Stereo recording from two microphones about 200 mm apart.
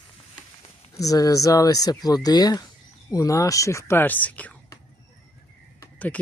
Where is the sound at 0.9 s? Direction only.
15° left (ahead or behind).